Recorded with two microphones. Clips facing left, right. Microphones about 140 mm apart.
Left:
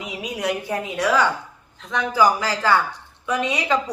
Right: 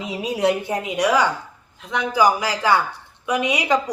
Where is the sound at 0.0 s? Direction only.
30° right (ahead or behind).